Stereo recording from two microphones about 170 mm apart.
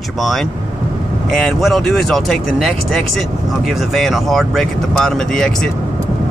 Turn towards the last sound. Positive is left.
turn(degrees=5)  # may be behind; listen again after turning